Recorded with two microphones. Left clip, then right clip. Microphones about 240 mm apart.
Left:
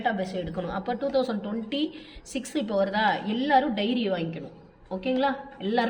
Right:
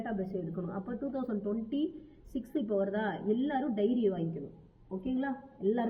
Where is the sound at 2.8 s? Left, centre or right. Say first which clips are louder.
Left 9 dB; left.